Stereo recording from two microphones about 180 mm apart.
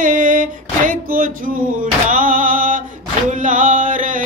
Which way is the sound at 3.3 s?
45° right (ahead or behind).